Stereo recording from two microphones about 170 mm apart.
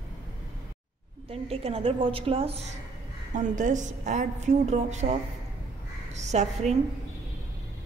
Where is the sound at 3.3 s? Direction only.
50° right (ahead or behind).